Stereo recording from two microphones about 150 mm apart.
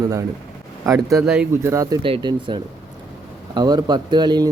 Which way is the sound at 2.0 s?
35° right (ahead or behind).